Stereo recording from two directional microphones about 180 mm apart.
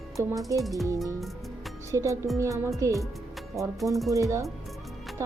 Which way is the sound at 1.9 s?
15° right (ahead or behind).